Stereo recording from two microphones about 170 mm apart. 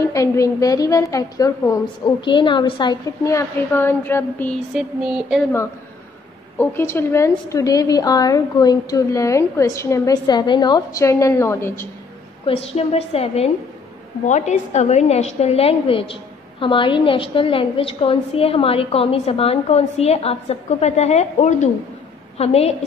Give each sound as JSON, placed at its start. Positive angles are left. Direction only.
{"t": 0.0, "sound": "a woman's voice", "side_deg": 20}
{"t": 4.7, "sound": "a sound", "side_deg": -5}
{"t": 6.6, "sound": "a woman's voice", "side_deg": 15}
{"t": 12.4, "sound": "a woman's voice", "side_deg": 35}